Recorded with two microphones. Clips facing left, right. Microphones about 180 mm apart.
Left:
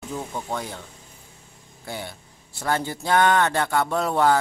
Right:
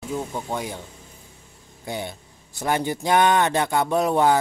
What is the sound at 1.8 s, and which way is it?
Speech, 20° right (ahead or behind).